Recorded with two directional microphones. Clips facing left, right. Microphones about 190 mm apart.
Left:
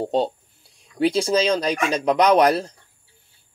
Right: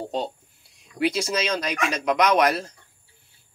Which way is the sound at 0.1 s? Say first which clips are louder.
Left 7 dB; 30° left (ahead or behind).